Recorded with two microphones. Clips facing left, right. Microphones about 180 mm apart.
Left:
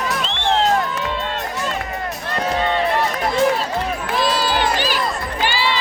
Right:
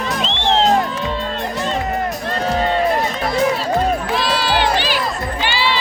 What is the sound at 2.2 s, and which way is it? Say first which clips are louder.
Run: even; 40° right (ahead or behind).